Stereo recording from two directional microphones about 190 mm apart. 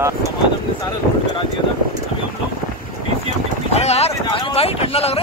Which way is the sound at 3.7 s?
35° left (ahead or behind).